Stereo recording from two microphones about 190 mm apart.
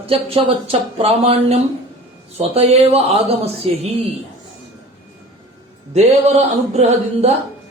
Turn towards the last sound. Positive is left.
turn(degrees=-35)  # may be behind; listen again after turning